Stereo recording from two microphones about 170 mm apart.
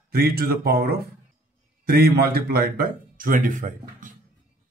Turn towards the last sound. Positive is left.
turn(degrees=-50)  # may be behind; listen again after turning